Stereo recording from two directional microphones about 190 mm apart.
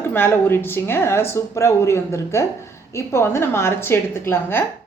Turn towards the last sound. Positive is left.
turn(degrees=10)  # may be behind; listen again after turning